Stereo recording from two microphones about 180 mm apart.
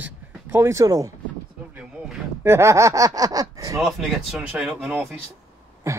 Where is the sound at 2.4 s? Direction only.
15° right (ahead or behind).